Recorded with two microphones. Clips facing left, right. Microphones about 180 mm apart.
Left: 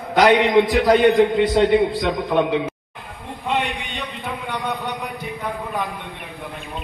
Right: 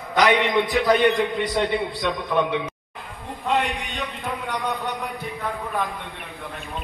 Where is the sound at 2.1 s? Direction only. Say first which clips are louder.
Left 3 dB; 30° left (ahead or behind).